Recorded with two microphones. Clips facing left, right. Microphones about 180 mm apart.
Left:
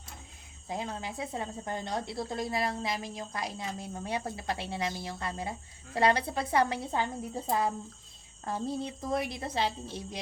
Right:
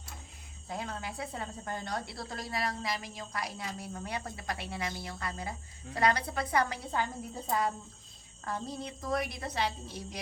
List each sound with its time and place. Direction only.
0.7 s a woman's voice: 20° left (ahead or behind)